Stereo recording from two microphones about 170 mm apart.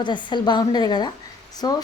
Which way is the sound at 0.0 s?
25° left (ahead or behind).